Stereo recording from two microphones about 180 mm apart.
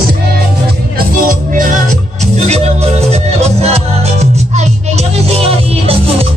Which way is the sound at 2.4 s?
35° right (ahead or behind).